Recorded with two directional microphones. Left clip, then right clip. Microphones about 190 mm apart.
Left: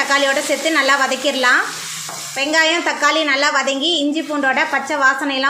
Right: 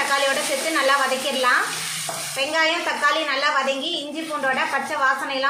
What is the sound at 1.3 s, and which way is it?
A woman's voice, 45° left (ahead or behind).